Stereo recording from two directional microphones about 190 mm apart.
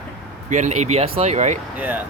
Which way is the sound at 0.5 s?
40° right (ahead or behind).